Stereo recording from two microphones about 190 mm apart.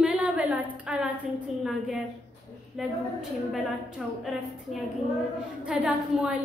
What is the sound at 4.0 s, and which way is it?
Speech, centre (ahead or behind).